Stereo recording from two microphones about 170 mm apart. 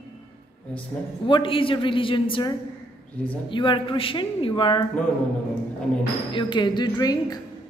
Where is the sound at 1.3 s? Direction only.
30° left (ahead or behind).